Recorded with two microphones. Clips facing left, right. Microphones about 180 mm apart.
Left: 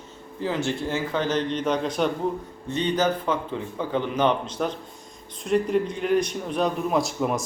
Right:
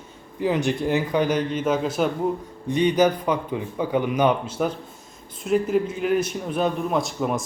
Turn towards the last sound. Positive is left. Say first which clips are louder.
# even
turn(degrees=0)  # may be behind; listen again after turning